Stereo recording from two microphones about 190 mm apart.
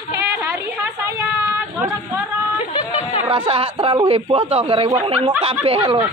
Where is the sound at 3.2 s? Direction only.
25° right (ahead or behind).